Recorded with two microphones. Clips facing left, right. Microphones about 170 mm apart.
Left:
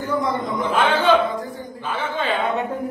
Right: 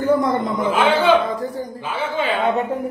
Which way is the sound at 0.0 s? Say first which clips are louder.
Right 5 dB; 55° right (ahead or behind).